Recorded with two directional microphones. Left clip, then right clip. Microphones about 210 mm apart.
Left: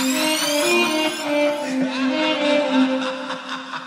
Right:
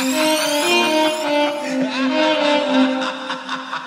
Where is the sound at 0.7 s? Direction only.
20° right (ahead or behind).